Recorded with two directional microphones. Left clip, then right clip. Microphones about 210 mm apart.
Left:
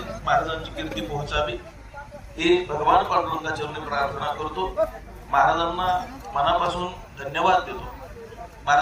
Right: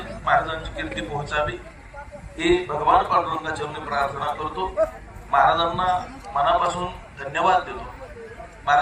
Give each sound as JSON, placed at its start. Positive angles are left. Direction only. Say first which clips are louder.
{"t": 0.3, "sound": "a man's voice", "louder": "right 2 dB", "side_deg": 25}